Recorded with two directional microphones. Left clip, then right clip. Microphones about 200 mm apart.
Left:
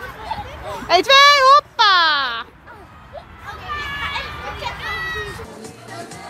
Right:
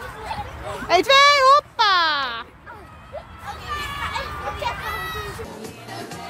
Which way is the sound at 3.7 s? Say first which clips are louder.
Left 3 dB; 55° right (ahead or behind).